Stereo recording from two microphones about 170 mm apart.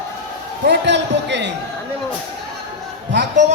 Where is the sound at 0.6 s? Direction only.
85° right.